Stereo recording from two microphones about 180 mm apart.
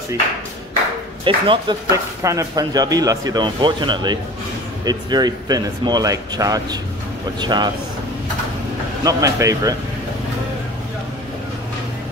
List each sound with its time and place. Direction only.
1.2 s speech: 30° right (ahead or behind)
1.9 s speech: 15° right (ahead or behind)
9.0 s speech: 20° right (ahead or behind)